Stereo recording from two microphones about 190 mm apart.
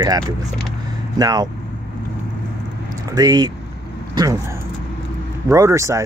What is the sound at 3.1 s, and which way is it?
Speech, 20° right (ahead or behind).